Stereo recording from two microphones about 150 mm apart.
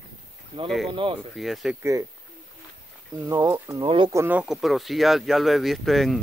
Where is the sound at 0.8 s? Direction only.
35° right (ahead or behind).